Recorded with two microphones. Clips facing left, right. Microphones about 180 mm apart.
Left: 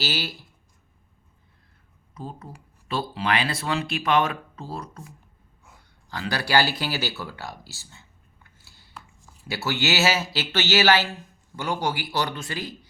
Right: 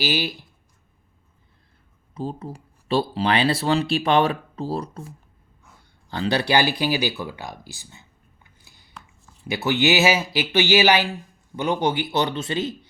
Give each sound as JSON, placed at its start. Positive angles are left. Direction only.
{"t": 0.0, "sound": "speech", "side_deg": -15}
{"t": 2.1, "sound": "speech", "side_deg": -30}
{"t": 8.4, "sound": "a sound", "side_deg": -15}
{"t": 9.5, "sound": "speech", "side_deg": -20}